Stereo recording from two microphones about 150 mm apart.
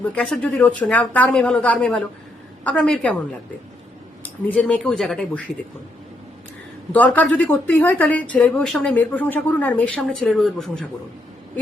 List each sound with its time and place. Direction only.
0.0 s speech: 10° left (ahead or behind)
4.2 s speech: 10° left (ahead or behind)
6.9 s speech: 10° left (ahead or behind)